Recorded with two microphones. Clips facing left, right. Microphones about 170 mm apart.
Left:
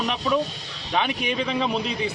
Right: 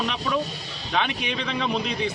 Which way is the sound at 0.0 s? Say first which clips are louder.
Left 2 dB; 5° left (ahead or behind).